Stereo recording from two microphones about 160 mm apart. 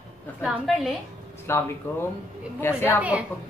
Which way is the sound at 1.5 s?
15° left (ahead or behind).